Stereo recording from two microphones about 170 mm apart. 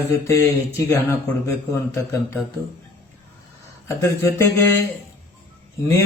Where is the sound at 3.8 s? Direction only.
15° left (ahead or behind).